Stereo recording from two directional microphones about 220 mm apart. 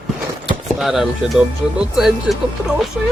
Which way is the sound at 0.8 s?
Centre (ahead or behind).